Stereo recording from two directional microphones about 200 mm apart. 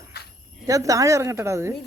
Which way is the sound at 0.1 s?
55° left (ahead or behind).